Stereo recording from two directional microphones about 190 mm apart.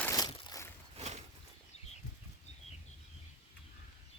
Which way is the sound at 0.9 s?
35° right (ahead or behind).